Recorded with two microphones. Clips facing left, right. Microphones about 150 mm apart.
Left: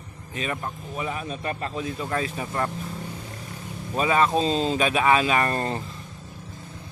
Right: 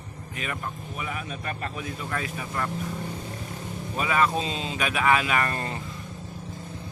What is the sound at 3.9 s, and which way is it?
A man's voice, 30° left (ahead or behind).